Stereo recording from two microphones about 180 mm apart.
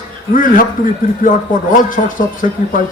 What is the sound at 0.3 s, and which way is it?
A man's voice, 50° left (ahead or behind).